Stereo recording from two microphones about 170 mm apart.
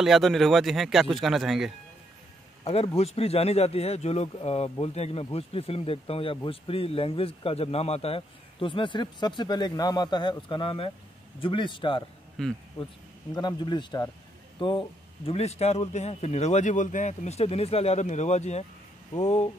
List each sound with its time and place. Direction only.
0.0 s speech: centre (ahead or behind)
2.6 s a man's voice: 35° left (ahead or behind)
12.4 s speech: centre (ahead or behind)
13.3 s speech: 25° left (ahead or behind); by 19.5 s 40° left (ahead or behind)